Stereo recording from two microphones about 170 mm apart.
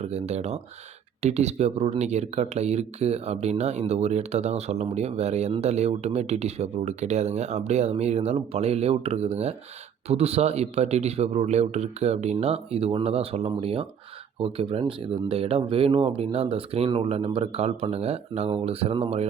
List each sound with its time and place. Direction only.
0.1 s speech: 40° right (ahead or behind)